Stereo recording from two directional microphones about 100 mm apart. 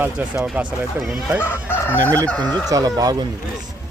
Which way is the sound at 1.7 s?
20° left (ahead or behind).